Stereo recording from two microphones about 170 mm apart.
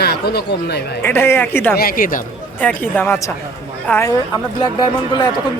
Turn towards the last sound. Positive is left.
turn(degrees=25)  # may be behind; listen again after turning